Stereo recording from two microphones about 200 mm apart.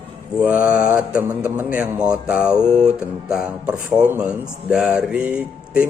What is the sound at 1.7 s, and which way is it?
Speech, 5° right (ahead or behind).